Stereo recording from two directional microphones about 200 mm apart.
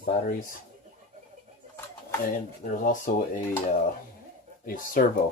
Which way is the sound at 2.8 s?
40° left (ahead or behind).